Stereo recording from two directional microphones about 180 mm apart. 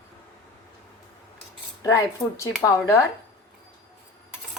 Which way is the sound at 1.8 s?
15° left (ahead or behind).